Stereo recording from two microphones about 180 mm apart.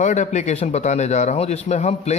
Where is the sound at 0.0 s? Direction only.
40° left (ahead or behind).